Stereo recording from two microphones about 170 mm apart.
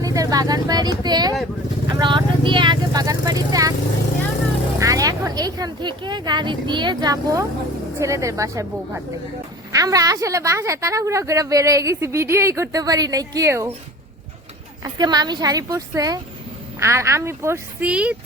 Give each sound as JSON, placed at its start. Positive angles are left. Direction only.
{"t": 0.0, "sound": "a woman's voice", "side_deg": -20}
{"t": 4.8, "sound": "a woman's voice", "side_deg": -20}
{"t": 9.7, "sound": "a woman's voice", "side_deg": -20}
{"t": 14.9, "sound": "a woman's voice", "side_deg": -25}